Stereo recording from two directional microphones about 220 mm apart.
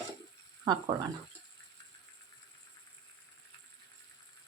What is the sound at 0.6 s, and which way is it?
Speech, 20° right (ahead or behind).